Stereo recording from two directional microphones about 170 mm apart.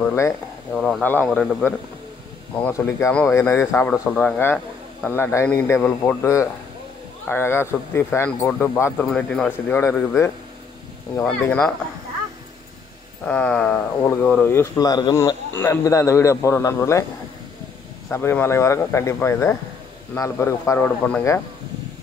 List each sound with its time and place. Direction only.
0.0 s speech: 15° left (ahead or behind)
0.7 s speech: centre (ahead or behind)
11.4 s speech: 10° left (ahead or behind)
13.2 s speech: 10° left (ahead or behind)
18.1 s speech: 15° left (ahead or behind)